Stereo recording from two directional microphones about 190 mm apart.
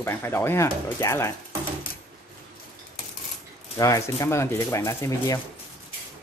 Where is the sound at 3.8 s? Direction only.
15° left (ahead or behind).